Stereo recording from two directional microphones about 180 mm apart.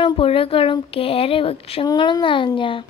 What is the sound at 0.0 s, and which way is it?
Child singing, 30° left (ahead or behind).